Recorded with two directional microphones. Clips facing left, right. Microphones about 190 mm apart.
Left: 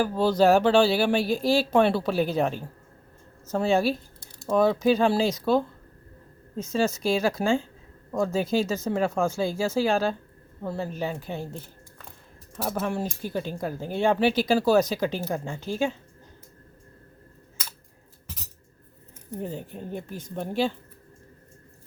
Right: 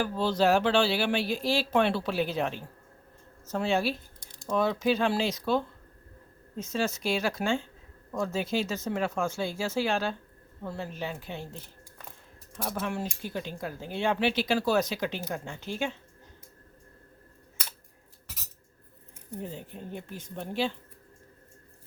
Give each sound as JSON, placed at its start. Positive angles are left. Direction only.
{"t": 0.0, "sound": "speech", "side_deg": 40}
{"t": 12.8, "sound": "speech", "side_deg": 40}
{"t": 19.4, "sound": "speech", "side_deg": 45}